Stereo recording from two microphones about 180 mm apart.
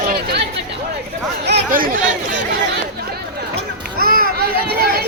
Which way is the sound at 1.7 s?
50° right (ahead or behind).